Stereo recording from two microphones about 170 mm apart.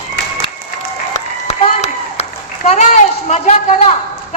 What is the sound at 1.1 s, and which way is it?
Applause, 40° left (ahead or behind).